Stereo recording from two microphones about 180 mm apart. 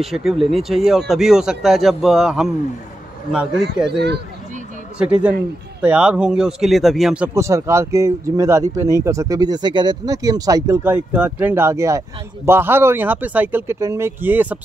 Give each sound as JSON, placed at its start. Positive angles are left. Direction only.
{"t": 0.0, "sound": "speech", "side_deg": 0}
{"t": 4.9, "sound": "speech", "side_deg": -5}
{"t": 7.3, "sound": "speech", "side_deg": -15}